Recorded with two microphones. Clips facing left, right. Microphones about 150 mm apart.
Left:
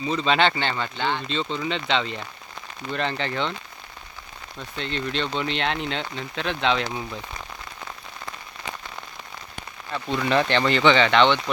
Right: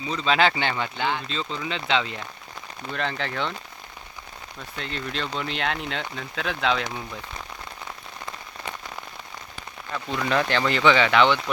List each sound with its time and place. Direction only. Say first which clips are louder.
0.1 s speech: even; centre (ahead or behind)
4.8 s speech: left 4 dB; 5° right (ahead or behind)
9.9 s speech: left 2 dB; centre (ahead or behind)